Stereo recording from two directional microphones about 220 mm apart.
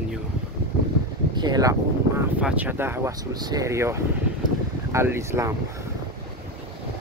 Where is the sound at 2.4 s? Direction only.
5° right (ahead or behind).